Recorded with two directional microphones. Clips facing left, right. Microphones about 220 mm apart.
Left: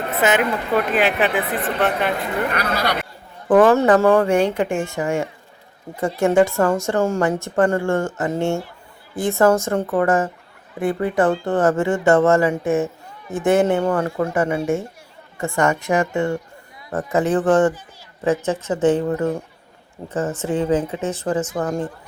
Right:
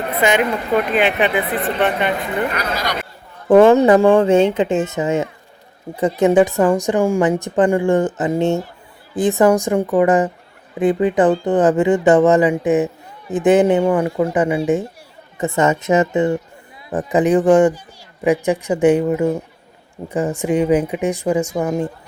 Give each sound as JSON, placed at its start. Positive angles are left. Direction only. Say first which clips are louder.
{"t": 0.2, "sound": "speech", "louder": "right 2 dB", "side_deg": 5}
{"t": 2.6, "sound": "speech", "louder": "left 1 dB", "side_deg": 60}
{"t": 3.5, "sound": "a woman's voice", "louder": "right 4 dB", "side_deg": -25}